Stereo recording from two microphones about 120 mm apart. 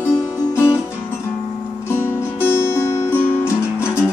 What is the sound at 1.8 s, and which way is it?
Music, 20° left (ahead or behind).